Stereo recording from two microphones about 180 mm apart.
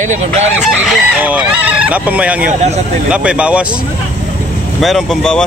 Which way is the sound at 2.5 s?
40° right (ahead or behind).